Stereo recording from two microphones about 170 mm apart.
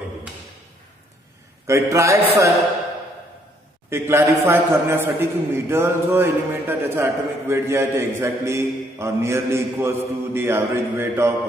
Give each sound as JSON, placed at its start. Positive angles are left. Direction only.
{"t": 1.7, "sound": "a man's voice", "side_deg": -15}
{"t": 3.9, "sound": "a man's voice", "side_deg": -15}